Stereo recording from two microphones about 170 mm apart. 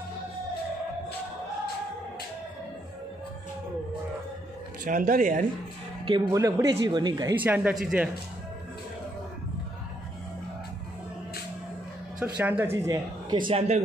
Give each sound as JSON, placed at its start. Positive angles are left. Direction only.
{"t": 4.8, "sound": "speech", "side_deg": -50}
{"t": 6.0, "sound": "speech", "side_deg": -25}
{"t": 7.4, "sound": "speech", "side_deg": -10}
{"t": 12.2, "sound": "speech", "side_deg": -10}